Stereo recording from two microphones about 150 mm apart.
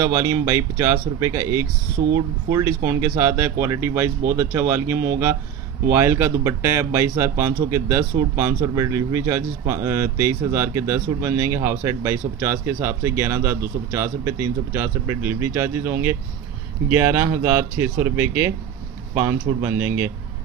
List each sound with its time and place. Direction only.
0.0 s speech: 20° right (ahead or behind)